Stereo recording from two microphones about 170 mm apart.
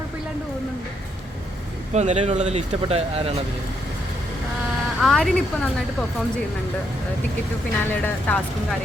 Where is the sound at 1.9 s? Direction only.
40° right (ahead or behind).